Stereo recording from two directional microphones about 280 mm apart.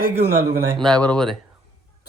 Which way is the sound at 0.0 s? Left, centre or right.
Right.